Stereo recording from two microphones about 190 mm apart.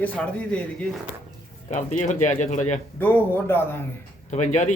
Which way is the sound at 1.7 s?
40° left (ahead or behind).